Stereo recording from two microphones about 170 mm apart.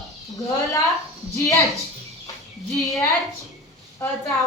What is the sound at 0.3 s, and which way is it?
A woman's voice, 20° left (ahead or behind).